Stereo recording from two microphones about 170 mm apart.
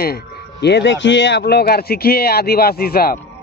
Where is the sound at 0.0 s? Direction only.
70° left (ahead or behind).